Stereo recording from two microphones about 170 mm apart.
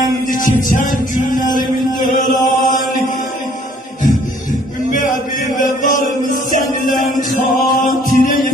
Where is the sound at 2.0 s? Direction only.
50° left (ahead or behind).